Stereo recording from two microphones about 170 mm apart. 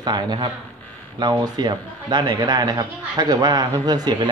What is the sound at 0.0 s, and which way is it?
Speech, 25° right (ahead or behind).